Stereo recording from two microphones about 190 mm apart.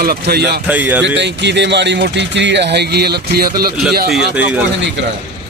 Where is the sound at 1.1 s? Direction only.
65° right (ahead or behind).